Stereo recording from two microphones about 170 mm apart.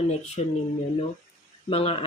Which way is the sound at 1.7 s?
35° left (ahead or behind).